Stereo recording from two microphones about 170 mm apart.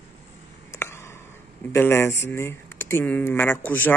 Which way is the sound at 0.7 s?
15° left (ahead or behind).